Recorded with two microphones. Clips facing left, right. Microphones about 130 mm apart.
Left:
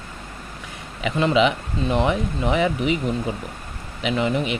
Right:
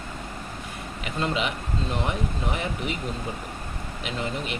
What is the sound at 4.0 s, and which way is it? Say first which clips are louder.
Speech: left 9 dB; 80° left.